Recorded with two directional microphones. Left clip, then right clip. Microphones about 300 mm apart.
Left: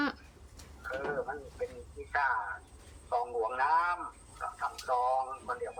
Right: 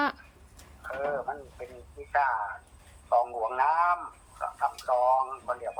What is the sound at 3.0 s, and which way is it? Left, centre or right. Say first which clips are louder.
Speech: right 6 dB; centre.